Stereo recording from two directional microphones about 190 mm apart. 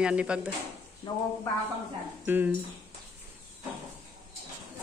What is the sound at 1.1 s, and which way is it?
Speech, 20° left (ahead or behind).